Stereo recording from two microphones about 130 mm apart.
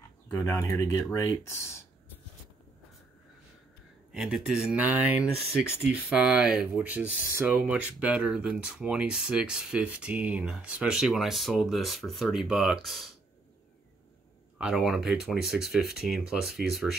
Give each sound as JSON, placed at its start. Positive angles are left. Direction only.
{"t": 0.5, "sound": "speech", "side_deg": 25}
{"t": 4.1, "sound": "speech", "side_deg": -5}
{"t": 14.6, "sound": "speech", "side_deg": -5}